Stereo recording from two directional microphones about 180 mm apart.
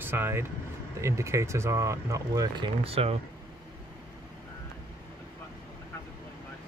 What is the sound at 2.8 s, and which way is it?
Speech, 35° right (ahead or behind).